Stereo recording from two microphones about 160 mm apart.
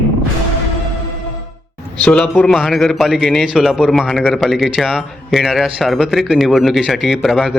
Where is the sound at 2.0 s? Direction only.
5° left (ahead or behind).